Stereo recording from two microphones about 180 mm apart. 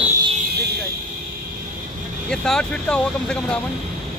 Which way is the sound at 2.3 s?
5° left (ahead or behind).